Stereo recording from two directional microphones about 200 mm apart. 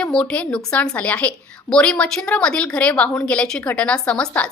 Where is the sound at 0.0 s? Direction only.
5° left (ahead or behind).